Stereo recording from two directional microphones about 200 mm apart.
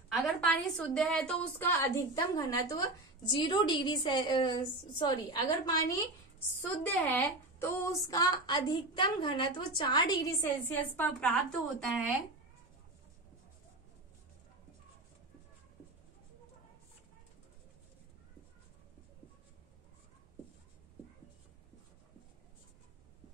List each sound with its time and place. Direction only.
0.1 s a woman's voice: 5° left (ahead or behind)